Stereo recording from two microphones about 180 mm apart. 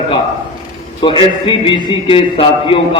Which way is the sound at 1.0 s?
30° left (ahead or behind).